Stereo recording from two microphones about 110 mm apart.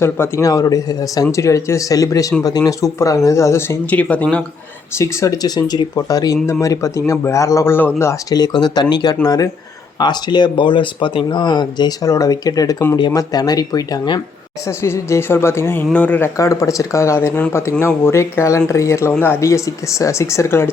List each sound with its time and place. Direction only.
0.0 s speech: 25° left (ahead or behind)
3.8 s speech: 15° left (ahead or behind)
4.9 s speech: 25° left (ahead or behind)
8.4 s speech: 40° left (ahead or behind)
14.7 s speech: 25° left (ahead or behind)
16.4 s speech: 30° left (ahead or behind)